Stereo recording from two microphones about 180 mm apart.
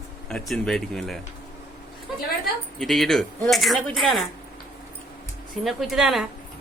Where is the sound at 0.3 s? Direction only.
5° left (ahead or behind).